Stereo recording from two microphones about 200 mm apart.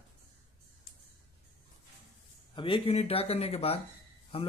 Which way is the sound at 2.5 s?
25° left (ahead or behind).